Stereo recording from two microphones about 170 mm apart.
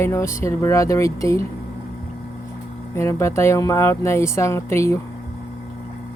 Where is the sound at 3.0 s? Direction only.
15° left (ahead or behind).